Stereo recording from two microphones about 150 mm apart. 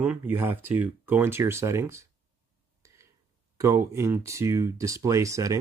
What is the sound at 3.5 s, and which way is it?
Speech, 20° right (ahead or behind).